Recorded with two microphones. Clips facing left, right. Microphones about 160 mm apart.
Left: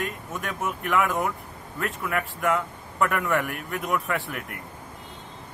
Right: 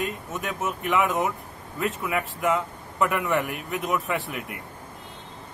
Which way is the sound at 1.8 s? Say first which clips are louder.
Right 2 dB; 5° right (ahead or behind).